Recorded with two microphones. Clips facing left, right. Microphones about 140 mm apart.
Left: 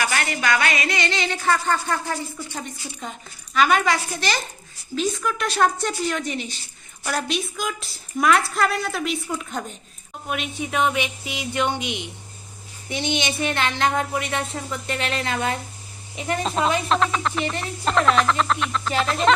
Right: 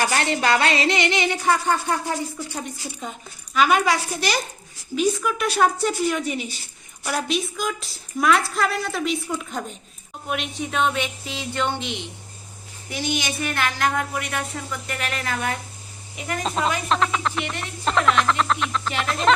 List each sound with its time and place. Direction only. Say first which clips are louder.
0.0 s a woman's voice: right 3 dB; 35° right (ahead or behind); by 15.5 s 25° left (ahead or behind)
16.4 s a woman's voice: left 1 dB; centre (ahead or behind)